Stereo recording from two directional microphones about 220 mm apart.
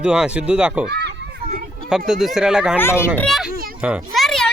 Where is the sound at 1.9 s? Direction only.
Centre (ahead or behind).